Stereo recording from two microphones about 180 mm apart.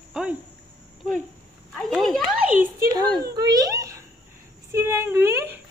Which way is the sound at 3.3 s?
20° right (ahead or behind).